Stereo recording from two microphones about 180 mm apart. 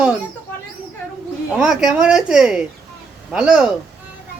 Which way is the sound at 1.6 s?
5° right (ahead or behind).